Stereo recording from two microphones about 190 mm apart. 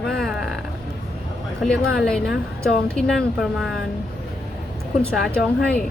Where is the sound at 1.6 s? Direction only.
5° left (ahead or behind).